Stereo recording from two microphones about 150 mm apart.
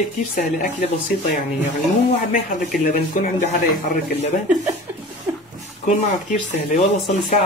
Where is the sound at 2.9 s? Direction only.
65° left (ahead or behind).